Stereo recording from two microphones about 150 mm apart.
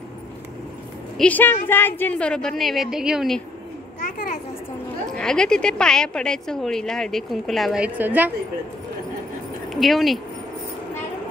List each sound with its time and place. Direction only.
1.1 s a woman's voice: 10° left (ahead or behind)
4.0 s children playing: 60° left (ahead or behind)
5.1 s a woman's voice: 5° left (ahead or behind); by 8.3 s 10° right (ahead or behind)
9.8 s a woman's voice: centre (ahead or behind)